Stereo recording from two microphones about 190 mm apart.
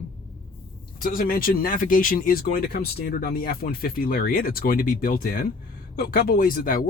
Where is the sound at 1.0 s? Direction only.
50° left (ahead or behind).